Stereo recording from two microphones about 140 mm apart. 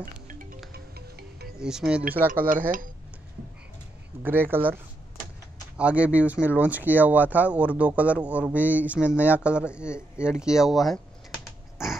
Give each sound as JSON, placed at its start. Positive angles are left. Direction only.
{"t": 0.0, "sound": "music", "side_deg": -80}
{"t": 1.6, "sound": "speech", "side_deg": -5}
{"t": 4.2, "sound": "speech", "side_deg": -15}
{"t": 5.8, "sound": "speech", "side_deg": -10}
{"t": 10.1, "sound": "typing", "side_deg": -5}